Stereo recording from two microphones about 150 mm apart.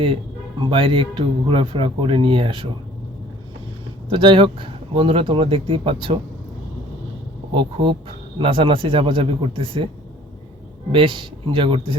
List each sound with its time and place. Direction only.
0.6 s speech: 35° right (ahead or behind)
4.1 s speech: 35° right (ahead or behind)
7.5 s speech: 30° right (ahead or behind)
10.9 s speech: 35° right (ahead or behind)